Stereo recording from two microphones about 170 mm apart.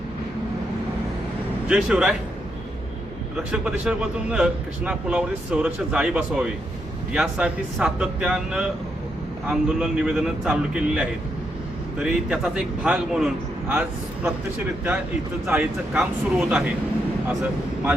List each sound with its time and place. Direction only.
1.6 s speech: 5° right (ahead or behind)
3.3 s speech: 5° right (ahead or behind)
15.4 s speech: 5° right (ahead or behind)